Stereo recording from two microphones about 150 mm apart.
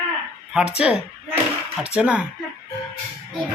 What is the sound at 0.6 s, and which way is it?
Speech, 5° right (ahead or behind).